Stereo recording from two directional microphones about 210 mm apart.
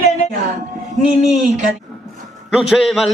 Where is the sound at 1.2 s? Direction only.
Centre (ahead or behind).